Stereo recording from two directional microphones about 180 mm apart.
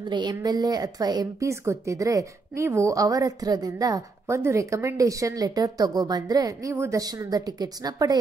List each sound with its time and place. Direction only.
0.0 s speech: 25° right (ahead or behind)